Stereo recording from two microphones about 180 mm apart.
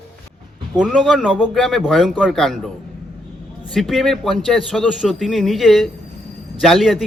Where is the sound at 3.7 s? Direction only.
Centre (ahead or behind).